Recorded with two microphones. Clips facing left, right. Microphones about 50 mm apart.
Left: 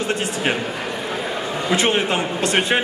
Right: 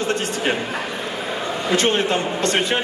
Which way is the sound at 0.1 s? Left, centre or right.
Centre.